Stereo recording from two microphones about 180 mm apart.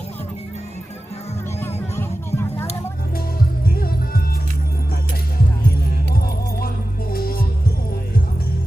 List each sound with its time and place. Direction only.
1.6 s vehicle: 15° left (ahead or behind)
3.7 s music: 55° left (ahead or behind)
6.1 s music: 55° left (ahead or behind)